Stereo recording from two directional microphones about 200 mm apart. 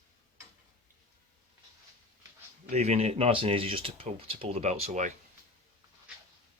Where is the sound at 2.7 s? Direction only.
35° right (ahead or behind).